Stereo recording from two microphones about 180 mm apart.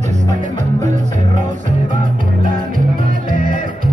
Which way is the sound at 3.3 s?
50° right (ahead or behind).